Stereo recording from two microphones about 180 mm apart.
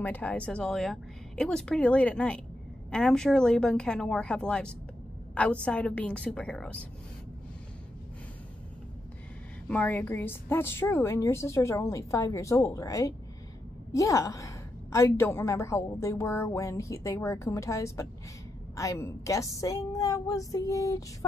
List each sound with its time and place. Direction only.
0.0 s a woman's voice: 10° left (ahead or behind)
9.7 s a woman's voice: 10° left (ahead or behind)